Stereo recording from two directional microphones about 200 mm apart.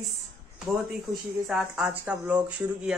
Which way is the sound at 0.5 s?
Centre (ahead or behind).